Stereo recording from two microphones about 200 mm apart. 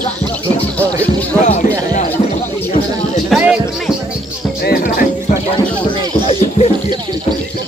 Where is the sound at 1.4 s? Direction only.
35° left (ahead or behind).